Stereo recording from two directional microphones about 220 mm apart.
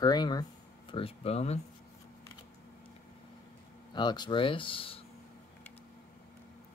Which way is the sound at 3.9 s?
20° left (ahead or behind).